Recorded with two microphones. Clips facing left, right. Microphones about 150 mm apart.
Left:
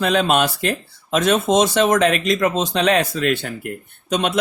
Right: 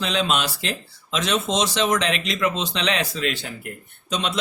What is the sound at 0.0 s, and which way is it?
A man's voice, 50° left (ahead or behind).